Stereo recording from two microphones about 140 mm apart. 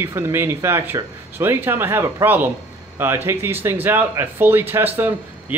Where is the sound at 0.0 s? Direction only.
15° right (ahead or behind).